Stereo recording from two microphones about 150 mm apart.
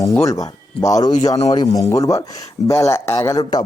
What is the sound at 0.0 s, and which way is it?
Speech, 25° left (ahead or behind).